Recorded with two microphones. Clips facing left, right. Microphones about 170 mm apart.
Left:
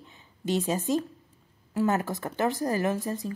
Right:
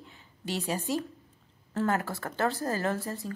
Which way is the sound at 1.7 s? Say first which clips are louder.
Left 3 dB; 15° left (ahead or behind).